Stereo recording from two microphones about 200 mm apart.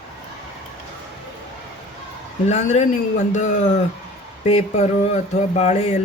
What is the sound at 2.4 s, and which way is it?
Speech, 35° left (ahead or behind).